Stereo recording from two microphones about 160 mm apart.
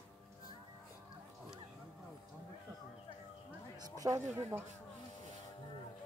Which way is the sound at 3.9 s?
20° right (ahead or behind).